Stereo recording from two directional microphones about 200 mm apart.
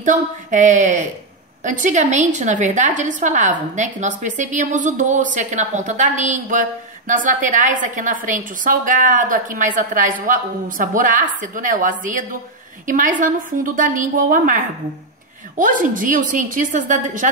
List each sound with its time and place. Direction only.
0.0 s a woman's voice: 40° right (ahead or behind)